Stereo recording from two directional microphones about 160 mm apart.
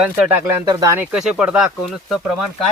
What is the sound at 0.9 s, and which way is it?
Speech, 5° right (ahead or behind).